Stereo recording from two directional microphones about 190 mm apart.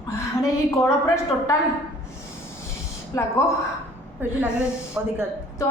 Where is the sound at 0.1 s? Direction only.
15° left (ahead or behind).